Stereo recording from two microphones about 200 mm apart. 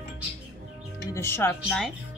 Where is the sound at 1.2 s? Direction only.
10° left (ahead or behind).